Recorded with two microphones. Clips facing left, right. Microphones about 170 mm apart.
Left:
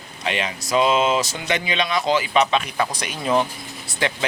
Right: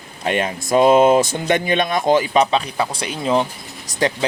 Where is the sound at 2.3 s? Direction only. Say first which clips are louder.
Right 2 dB; 35° right (ahead or behind).